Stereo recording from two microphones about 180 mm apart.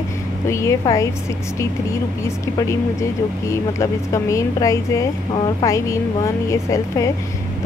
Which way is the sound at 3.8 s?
15° left (ahead or behind).